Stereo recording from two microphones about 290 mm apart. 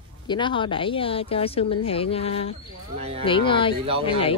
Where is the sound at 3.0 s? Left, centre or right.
Centre.